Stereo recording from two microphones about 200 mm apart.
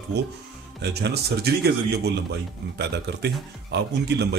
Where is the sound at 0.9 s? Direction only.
55° right (ahead or behind).